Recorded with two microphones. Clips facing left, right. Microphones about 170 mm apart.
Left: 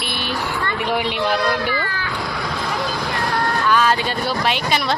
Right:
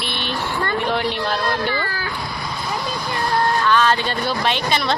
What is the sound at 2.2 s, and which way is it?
Vehicle, 90° left.